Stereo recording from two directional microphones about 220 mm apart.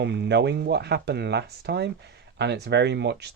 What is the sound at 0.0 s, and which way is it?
Speech, 50° right (ahead or behind).